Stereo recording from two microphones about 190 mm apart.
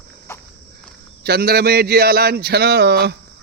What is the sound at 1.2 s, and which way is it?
A man's voice, 55° right (ahead or behind).